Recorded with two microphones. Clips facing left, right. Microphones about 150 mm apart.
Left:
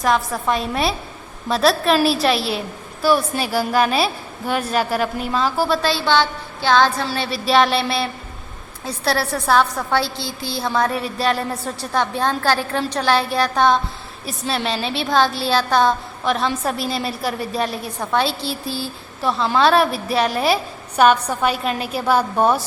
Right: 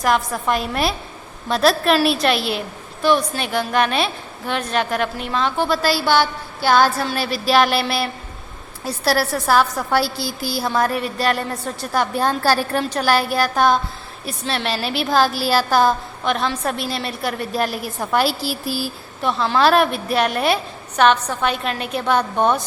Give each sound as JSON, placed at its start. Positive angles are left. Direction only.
{"t": 0.0, "sound": "a woman's voice", "side_deg": 0}
{"t": 6.1, "sound": "music", "side_deg": -10}
{"t": 7.1, "sound": "a woman's voice", "side_deg": 0}
{"t": 10.0, "sound": "a woman's voice", "side_deg": 25}
{"t": 10.6, "sound": "a woman's voice", "side_deg": 0}
{"t": 18.4, "sound": "a woman's voice", "side_deg": 25}
{"t": 19.2, "sound": "a woman's voice", "side_deg": 0}